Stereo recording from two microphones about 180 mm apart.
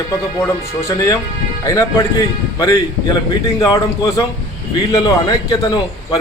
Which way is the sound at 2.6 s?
20° left (ahead or behind).